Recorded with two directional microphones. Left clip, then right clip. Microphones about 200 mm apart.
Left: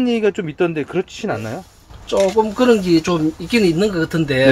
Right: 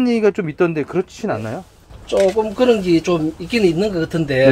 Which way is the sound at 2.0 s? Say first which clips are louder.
Even; 35° left (ahead or behind).